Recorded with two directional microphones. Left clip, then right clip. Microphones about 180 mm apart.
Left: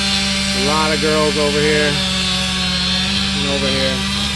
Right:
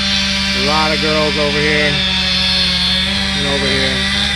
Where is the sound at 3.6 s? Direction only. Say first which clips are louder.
Right 3 dB; 35° left (ahead or behind).